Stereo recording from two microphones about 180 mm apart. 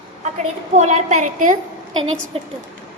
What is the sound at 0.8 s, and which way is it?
Child singing, 40° right (ahead or behind).